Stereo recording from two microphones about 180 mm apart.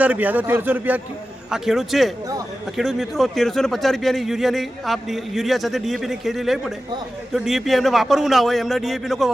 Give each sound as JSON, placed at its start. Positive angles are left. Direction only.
{"t": 0.0, "sound": "speech", "side_deg": -10}